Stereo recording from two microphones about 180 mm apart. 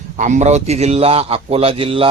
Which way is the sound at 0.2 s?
40° right (ahead or behind).